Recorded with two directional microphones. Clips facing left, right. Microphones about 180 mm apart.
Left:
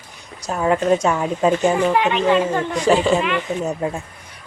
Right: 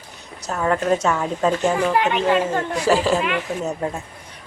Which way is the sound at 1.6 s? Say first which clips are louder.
Left 2 dB; centre (ahead or behind).